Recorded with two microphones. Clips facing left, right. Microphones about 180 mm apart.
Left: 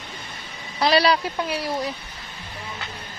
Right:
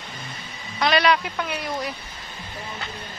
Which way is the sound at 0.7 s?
35° left (ahead or behind).